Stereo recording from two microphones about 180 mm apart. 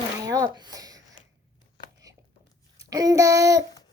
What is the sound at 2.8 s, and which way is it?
Speech, 20° right (ahead or behind).